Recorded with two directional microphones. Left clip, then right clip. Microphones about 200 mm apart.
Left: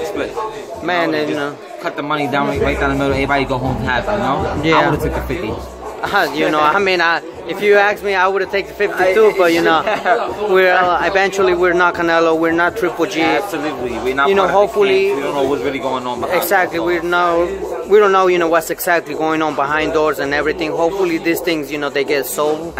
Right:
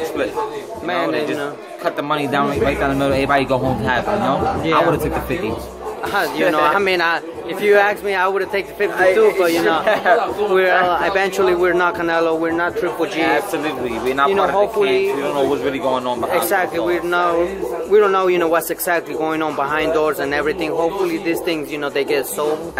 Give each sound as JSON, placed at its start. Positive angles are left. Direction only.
{"t": 0.8, "sound": "a man's voice", "side_deg": 20}
{"t": 1.9, "sound": "a man's voice", "side_deg": -5}
{"t": 4.6, "sound": "a man's voice", "side_deg": 20}
{"t": 6.1, "sound": "a man's voice", "side_deg": 20}
{"t": 10.1, "sound": "a man's voice", "side_deg": -5}
{"t": 10.5, "sound": "a man's voice", "side_deg": 20}
{"t": 14.0, "sound": "a man's voice", "side_deg": 0}
{"t": 14.6, "sound": "a man's voice", "side_deg": 25}
{"t": 15.6, "sound": "a man's voice", "side_deg": 0}
{"t": 16.3, "sound": "a man's voice", "side_deg": 15}